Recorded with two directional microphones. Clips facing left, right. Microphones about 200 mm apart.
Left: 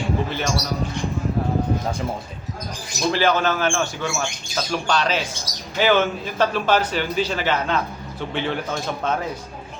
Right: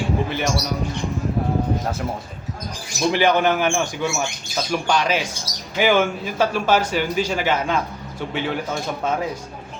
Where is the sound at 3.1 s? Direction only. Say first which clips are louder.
Right 2 dB; 15° right (ahead or behind).